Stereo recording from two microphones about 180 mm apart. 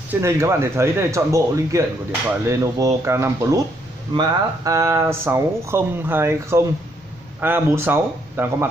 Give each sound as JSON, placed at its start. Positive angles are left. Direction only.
{"t": 0.1, "sound": "speech", "side_deg": -15}